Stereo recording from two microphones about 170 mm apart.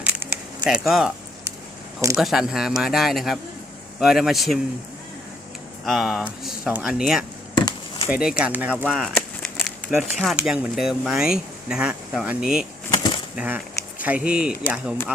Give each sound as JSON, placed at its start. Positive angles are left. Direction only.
{"t": 0.0, "sound": "a sound", "side_deg": -10}
{"t": 2.1, "sound": "speech", "side_deg": 0}
{"t": 5.8, "sound": "speech", "side_deg": 0}
{"t": 7.5, "sound": "chop", "side_deg": 25}
{"t": 8.1, "sound": "speech", "side_deg": -5}
{"t": 13.0, "sound": "bird flight", "side_deg": 25}
{"t": 13.3, "sound": "speech", "side_deg": -5}